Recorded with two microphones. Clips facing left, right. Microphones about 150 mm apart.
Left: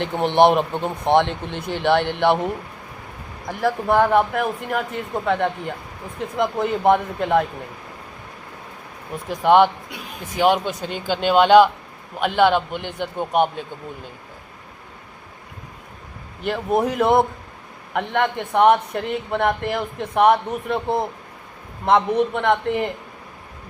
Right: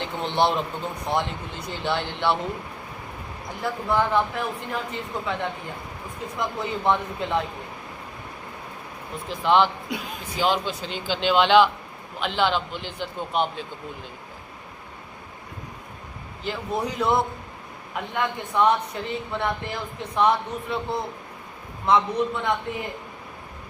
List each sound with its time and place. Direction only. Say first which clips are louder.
0.0 s a man's voice: left 7 dB; 65° left (ahead or behind)
3.6 s a man's voice: left 6 dB; 60° left (ahead or behind)
9.3 s a man's voice: left 5 dB; 50° left (ahead or behind)
16.4 s a man's voice: left 7 dB; 60° left (ahead or behind)
17.9 s a man's voice: left 6 dB; 65° left (ahead or behind)